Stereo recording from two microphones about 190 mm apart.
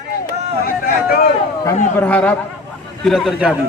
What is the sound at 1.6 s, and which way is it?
A man's voice, 10° left (ahead or behind).